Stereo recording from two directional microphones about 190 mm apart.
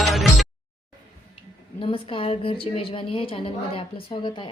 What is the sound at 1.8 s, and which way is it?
A woman's voice, 30° left (ahead or behind).